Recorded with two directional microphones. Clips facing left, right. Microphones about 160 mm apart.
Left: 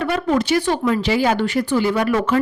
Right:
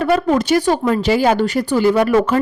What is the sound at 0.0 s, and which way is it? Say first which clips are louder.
Speech: right 4 dB; 45° right (ahead or behind).